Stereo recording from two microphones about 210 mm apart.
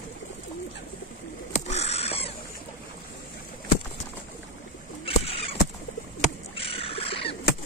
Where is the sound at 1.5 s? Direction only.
30° left (ahead or behind).